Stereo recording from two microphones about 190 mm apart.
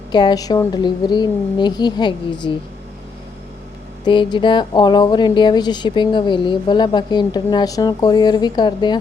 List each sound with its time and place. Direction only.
0.1 s speech: 25° left (ahead or behind)
4.0 s speech: 25° left (ahead or behind)